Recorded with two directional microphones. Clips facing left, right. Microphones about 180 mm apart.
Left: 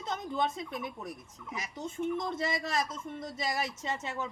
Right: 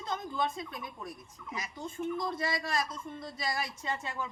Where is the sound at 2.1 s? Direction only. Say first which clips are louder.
Left 1 dB; 25° left (ahead or behind).